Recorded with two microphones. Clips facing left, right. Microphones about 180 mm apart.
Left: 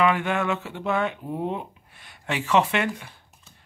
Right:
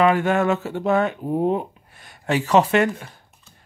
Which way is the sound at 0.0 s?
40° right (ahead or behind).